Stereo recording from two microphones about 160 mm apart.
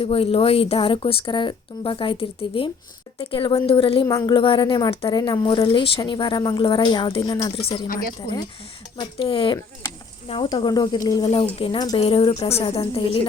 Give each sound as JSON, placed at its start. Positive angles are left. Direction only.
{"t": 0.0, "sound": "speech", "side_deg": 35}
{"t": 4.0, "sound": "a woman's voice", "side_deg": 25}
{"t": 9.0, "sound": "a woman's voice", "side_deg": 30}
{"t": 11.5, "sound": "speech", "side_deg": 35}